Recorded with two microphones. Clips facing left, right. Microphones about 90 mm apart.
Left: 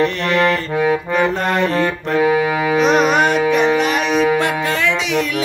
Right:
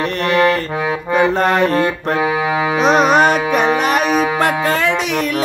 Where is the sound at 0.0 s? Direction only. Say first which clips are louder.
Right 1 dB; 40° right (ahead or behind).